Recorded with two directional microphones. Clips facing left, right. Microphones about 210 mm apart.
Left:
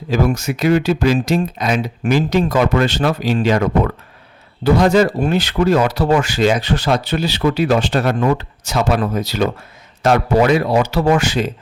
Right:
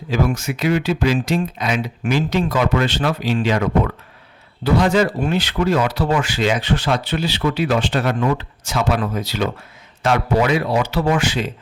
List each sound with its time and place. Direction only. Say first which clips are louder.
0.1 s speech: left 3 dB; 40° left (ahead or behind)